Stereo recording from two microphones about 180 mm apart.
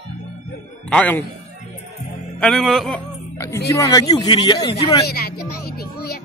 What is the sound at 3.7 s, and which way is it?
Speech, 20° left (ahead or behind).